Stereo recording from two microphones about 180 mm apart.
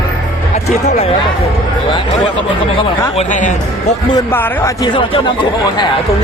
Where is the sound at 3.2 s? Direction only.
45° left (ahead or behind).